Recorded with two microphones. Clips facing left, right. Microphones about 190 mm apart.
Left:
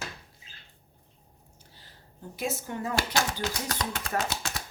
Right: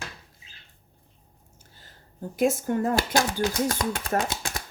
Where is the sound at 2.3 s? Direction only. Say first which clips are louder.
Right 10 dB; 50° right (ahead or behind).